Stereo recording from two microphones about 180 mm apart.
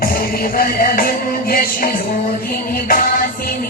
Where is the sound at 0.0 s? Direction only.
55° left (ahead or behind).